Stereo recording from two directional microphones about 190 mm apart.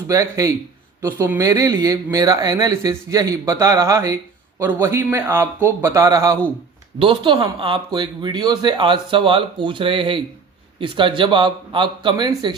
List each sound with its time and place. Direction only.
0.1 s speech: 15° right (ahead or behind)